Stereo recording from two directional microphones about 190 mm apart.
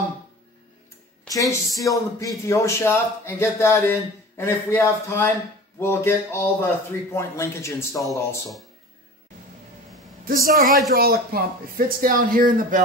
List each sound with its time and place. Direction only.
1.3 s speech: 15° left (ahead or behind)
10.2 s speech: 50° right (ahead or behind)